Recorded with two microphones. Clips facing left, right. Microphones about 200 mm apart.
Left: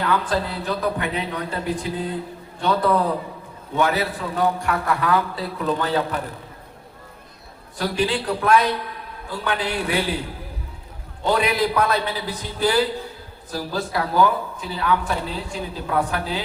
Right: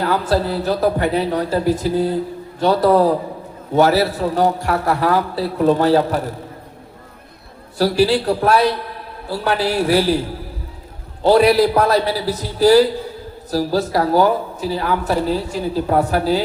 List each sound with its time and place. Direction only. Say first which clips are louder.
0.0 s speech: right 5 dB; 40° right (ahead or behind)
7.8 s speech: right 8 dB; 40° right (ahead or behind)
11.3 s speech: right 8 dB; 40° right (ahead or behind)